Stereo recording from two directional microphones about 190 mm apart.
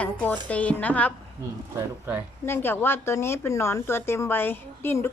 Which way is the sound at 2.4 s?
10° left (ahead or behind).